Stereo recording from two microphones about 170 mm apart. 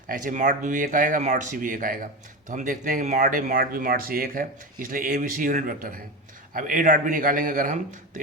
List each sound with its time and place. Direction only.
0.1 s speech: 55° right (ahead or behind)